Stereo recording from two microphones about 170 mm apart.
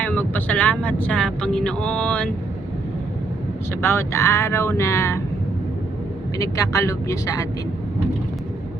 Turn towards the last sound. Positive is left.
turn(degrees=20)  # may be behind; listen again after turning